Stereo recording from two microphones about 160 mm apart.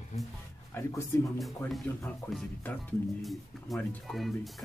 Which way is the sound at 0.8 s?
20° left (ahead or behind).